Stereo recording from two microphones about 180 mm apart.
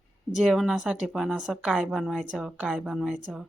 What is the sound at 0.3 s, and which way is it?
A woman's voice, centre (ahead or behind).